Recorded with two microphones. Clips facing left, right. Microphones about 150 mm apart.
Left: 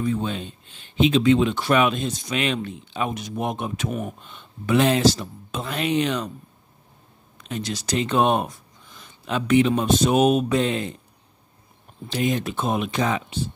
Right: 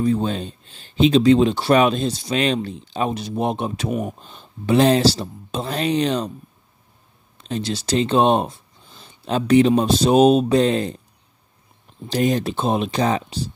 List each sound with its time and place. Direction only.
0.0 s speech: 35° right (ahead or behind)
7.3 s speech: 30° right (ahead or behind)
12.1 s speech: 40° right (ahead or behind)